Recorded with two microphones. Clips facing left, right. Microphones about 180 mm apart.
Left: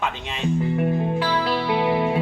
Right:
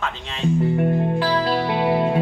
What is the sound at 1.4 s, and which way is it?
Music, 45° right (ahead or behind).